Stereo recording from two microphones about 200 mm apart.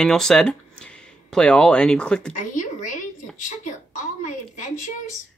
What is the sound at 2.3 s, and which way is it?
Speech, 40° left (ahead or behind).